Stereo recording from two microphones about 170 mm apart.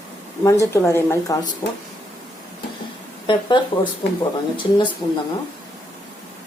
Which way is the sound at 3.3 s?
25° left (ahead or behind).